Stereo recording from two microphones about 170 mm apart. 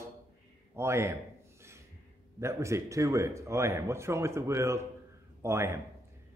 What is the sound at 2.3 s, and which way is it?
A man's voice, 15° right (ahead or behind).